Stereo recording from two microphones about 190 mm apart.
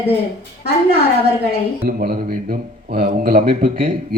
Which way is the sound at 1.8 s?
55° right (ahead or behind).